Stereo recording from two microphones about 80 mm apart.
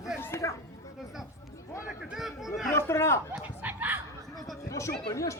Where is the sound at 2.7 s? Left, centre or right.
Left.